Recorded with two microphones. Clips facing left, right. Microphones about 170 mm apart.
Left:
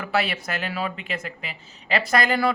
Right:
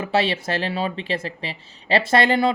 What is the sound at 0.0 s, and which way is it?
Speech, 25° right (ahead or behind).